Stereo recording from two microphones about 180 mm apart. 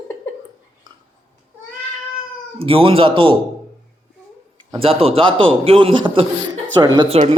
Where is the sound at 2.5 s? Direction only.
30° right (ahead or behind).